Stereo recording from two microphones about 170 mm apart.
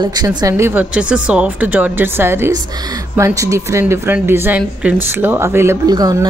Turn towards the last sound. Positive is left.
turn(degrees=-20)  # may be behind; listen again after turning